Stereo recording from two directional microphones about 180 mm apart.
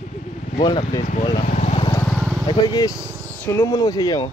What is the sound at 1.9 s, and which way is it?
Vehicle, 5° left (ahead or behind).